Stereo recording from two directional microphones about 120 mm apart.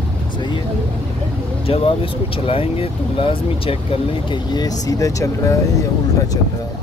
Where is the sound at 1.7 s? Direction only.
50° left (ahead or behind).